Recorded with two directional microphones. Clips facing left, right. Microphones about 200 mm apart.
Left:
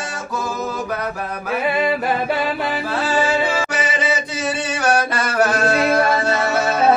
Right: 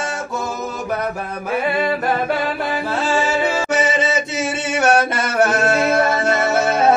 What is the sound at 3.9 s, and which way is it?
Mantra, 25° right (ahead or behind).